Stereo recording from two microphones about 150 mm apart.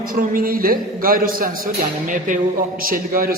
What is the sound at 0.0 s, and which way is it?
A man's voice, 70° right (ahead or behind).